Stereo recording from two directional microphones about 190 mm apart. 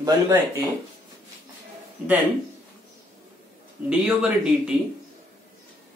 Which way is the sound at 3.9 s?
5° right (ahead or behind).